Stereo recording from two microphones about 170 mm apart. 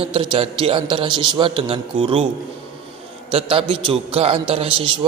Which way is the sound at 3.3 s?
35° right (ahead or behind).